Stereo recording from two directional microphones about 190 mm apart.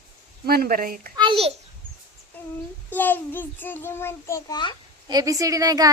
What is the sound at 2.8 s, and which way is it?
A child's voice, 10° left (ahead or behind).